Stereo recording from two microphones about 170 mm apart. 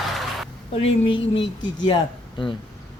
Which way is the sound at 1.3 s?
90° left.